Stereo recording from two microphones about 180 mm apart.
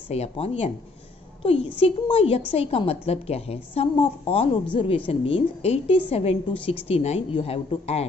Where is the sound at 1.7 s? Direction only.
30° left (ahead or behind).